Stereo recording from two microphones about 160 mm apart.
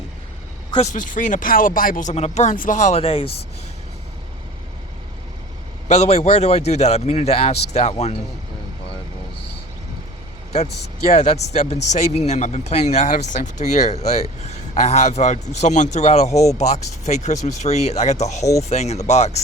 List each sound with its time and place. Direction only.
0.8 s speech: 55° left (ahead or behind); by 3.2 s 35° left (ahead or behind)
5.9 s speech: 40° left (ahead or behind)
11.1 s speech: 45° left (ahead or behind)